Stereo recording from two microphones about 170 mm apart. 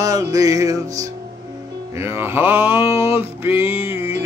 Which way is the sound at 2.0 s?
15° right (ahead or behind).